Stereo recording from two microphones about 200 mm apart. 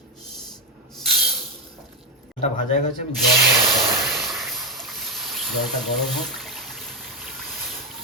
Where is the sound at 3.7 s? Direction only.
Centre (ahead or behind).